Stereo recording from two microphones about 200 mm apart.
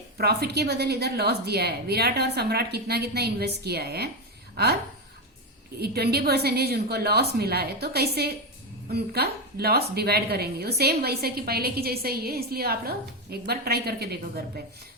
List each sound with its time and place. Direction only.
0.2 s a woman's voice: 55° right (ahead or behind)
5.8 s a woman's voice: 50° right (ahead or behind)